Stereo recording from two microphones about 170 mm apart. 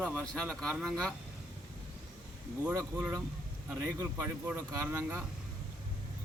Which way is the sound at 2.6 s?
10° right (ahead or behind).